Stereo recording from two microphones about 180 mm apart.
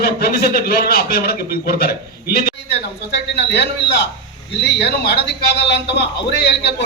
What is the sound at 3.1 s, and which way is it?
A man's voice, 70° left (ahead or behind).